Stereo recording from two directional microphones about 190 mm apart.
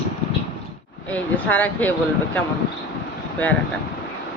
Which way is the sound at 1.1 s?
10° left (ahead or behind).